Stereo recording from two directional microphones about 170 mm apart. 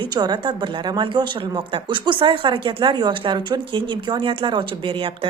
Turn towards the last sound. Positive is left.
turn(degrees=-30)  # may be behind; listen again after turning